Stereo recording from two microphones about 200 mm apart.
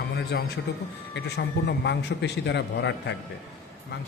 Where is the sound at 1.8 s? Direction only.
60° left (ahead or behind).